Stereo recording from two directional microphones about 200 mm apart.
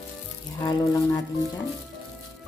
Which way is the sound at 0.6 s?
20° left (ahead or behind).